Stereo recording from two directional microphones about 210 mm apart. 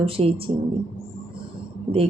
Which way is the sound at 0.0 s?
25° right (ahead or behind).